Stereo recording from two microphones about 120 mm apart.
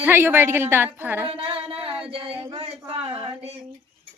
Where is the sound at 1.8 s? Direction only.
50° right (ahead or behind).